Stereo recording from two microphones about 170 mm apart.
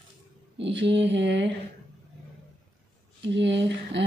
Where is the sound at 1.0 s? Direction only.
90° right.